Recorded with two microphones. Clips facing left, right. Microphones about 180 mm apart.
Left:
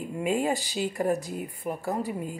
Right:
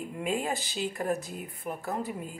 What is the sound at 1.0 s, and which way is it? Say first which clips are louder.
Speech: left 6 dB; 15° left (ahead or behind).